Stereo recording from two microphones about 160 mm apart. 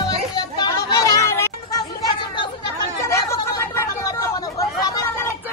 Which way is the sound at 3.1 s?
15° left (ahead or behind).